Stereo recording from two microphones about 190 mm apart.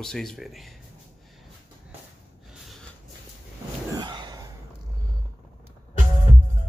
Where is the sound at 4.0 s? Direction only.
20° right (ahead or behind).